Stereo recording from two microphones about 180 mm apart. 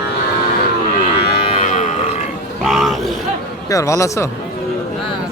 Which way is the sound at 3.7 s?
15° left (ahead or behind).